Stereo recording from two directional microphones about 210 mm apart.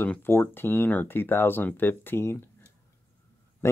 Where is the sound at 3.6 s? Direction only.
15° left (ahead or behind).